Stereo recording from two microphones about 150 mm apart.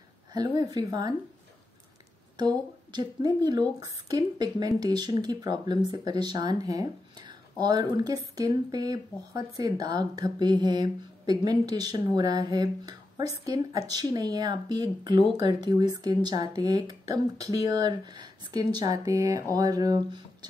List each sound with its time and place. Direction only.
0.3 s speech: 25° right (ahead or behind)
2.3 s speech: 30° right (ahead or behind)